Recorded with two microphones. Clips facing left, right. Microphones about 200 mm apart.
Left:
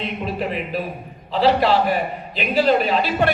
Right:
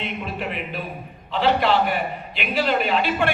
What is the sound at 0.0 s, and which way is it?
A man's voice, 35° left (ahead or behind).